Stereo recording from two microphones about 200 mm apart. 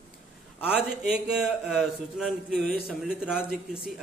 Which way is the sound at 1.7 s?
Centre (ahead or behind).